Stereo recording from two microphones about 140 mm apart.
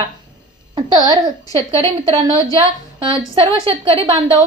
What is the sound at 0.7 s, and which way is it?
Speech, 35° right (ahead or behind).